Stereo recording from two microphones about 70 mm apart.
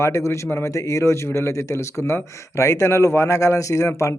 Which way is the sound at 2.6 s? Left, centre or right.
Left.